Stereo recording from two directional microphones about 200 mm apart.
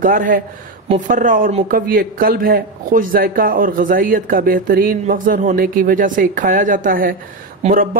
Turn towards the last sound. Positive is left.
turn(degrees=-45)  # may be behind; listen again after turning